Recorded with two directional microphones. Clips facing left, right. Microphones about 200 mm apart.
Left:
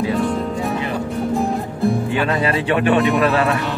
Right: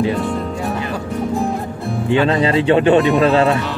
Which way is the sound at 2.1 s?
25° right (ahead or behind).